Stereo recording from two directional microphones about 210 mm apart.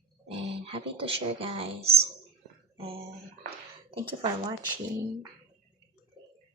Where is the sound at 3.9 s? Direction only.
20° right (ahead or behind).